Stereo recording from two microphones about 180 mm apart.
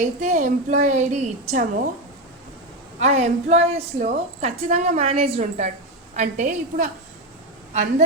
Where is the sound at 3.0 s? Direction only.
40° right (ahead or behind).